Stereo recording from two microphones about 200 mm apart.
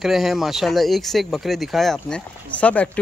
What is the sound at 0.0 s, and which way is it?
Speech, centre (ahead or behind).